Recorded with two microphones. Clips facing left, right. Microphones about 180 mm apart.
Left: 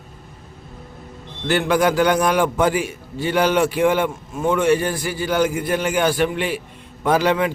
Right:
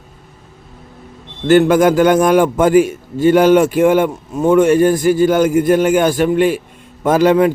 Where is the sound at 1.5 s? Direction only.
45° right (ahead or behind).